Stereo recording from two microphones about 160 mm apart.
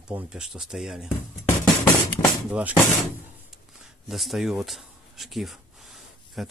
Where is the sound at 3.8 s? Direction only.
Centre (ahead or behind).